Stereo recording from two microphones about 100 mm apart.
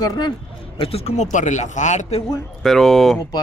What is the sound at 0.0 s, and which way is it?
Speech, 40° left (ahead or behind).